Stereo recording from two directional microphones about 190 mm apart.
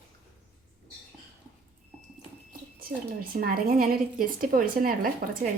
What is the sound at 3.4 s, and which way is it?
Speech, 50° right (ahead or behind).